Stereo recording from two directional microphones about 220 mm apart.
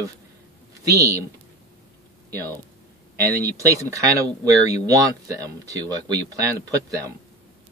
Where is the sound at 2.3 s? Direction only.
15° right (ahead or behind).